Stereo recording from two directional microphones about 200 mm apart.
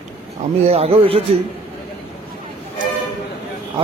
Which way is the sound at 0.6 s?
30° right (ahead or behind).